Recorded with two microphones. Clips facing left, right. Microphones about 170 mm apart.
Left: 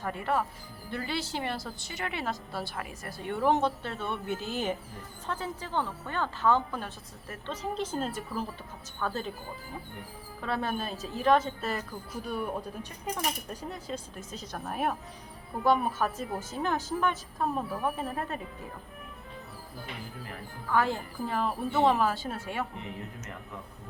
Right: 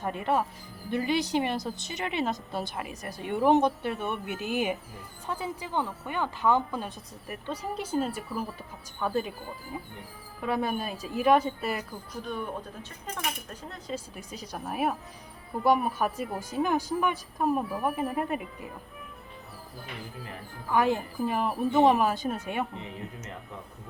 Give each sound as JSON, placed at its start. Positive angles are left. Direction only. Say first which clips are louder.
{"t": 0.0, "sound": "a woman's voice", "louder": "right 2 dB", "side_deg": -20}
{"t": 10.4, "sound": "a woman's voice", "louder": "right 3 dB", "side_deg": -10}
{"t": 12.2, "sound": "speech", "louder": "left 1 dB", "side_deg": 10}
{"t": 13.5, "sound": "speech", "louder": "left 3 dB", "side_deg": 10}
{"t": 13.9, "sound": "a woman's voice", "louder": "right 1 dB", "side_deg": -10}
{"t": 20.2, "sound": "a woman's voice", "louder": "even", "side_deg": -15}